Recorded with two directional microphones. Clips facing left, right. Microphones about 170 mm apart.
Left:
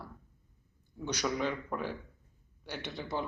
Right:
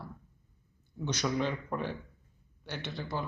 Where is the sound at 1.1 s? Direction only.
10° left (ahead or behind).